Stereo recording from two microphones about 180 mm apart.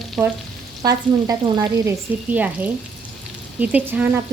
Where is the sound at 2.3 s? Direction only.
10° right (ahead or behind).